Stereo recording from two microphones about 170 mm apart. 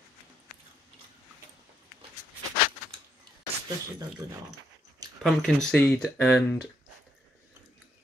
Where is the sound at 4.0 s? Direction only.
20° right (ahead or behind).